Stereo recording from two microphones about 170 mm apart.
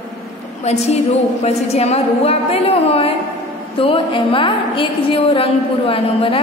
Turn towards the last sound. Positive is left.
turn(degrees=30)  # may be behind; listen again after turning